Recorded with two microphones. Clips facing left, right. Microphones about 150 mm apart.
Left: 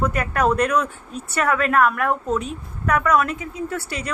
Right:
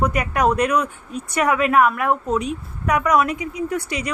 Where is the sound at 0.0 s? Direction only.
10° right (ahead or behind).